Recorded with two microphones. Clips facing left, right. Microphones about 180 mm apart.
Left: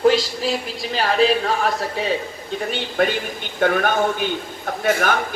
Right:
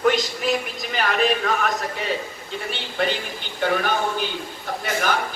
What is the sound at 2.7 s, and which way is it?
A man's voice, 50° left (ahead or behind).